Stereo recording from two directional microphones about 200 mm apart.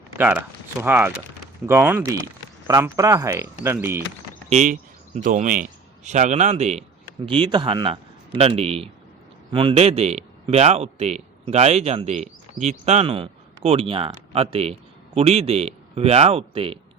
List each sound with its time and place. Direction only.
0.2 s speech: 10° right (ahead or behind)
4.4 s a man's voice: 35° right (ahead or behind)